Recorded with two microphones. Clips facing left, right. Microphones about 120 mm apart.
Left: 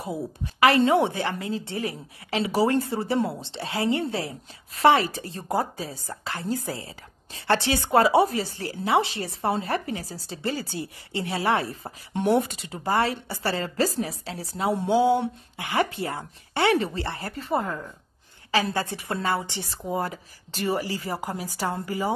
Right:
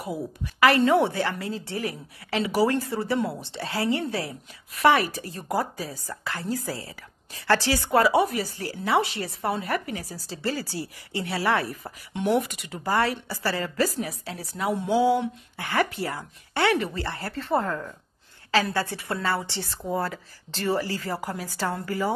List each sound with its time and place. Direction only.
0.0 s a woman's voice: 25° left (ahead or behind)
17.5 s a woman's voice: 5° left (ahead or behind)
18.5 s a woman's voice: 20° left (ahead or behind)